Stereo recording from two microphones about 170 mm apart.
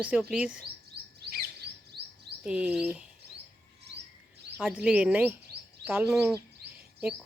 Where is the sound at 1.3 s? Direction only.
65° right (ahead or behind).